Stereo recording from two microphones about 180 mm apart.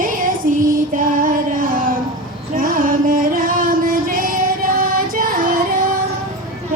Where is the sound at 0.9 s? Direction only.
50° right (ahead or behind).